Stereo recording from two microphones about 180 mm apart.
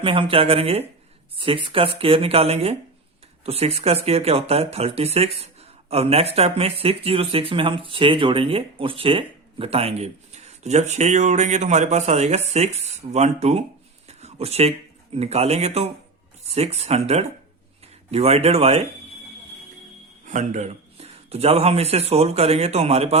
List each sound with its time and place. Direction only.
0.0 s speech: 30° right (ahead or behind)
14.1 s a sound: 35° right (ahead or behind)
15.1 s speech: 35° right (ahead or behind)
20.2 s speech: 40° right (ahead or behind)